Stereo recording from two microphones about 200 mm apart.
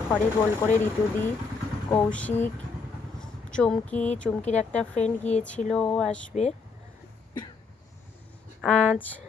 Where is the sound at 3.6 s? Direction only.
5° left (ahead or behind).